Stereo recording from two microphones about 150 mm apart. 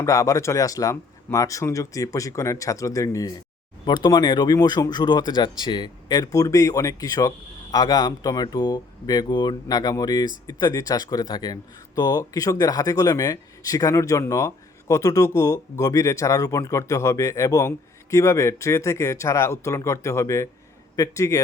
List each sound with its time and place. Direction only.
0.0 s speech: 20° left (ahead or behind)